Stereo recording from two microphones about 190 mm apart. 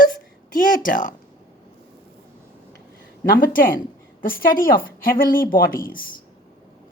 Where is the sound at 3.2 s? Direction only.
50° left (ahead or behind).